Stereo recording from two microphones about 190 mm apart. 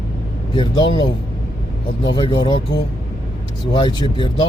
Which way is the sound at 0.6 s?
25° left (ahead or behind).